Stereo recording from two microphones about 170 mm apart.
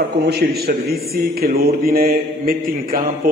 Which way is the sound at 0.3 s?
65° right (ahead or behind).